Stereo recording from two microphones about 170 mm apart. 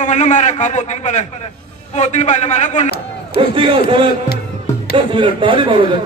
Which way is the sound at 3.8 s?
30° right (ahead or behind).